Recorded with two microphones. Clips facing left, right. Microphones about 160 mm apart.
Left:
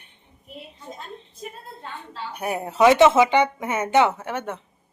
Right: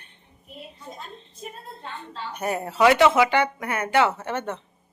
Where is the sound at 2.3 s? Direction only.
10° left (ahead or behind).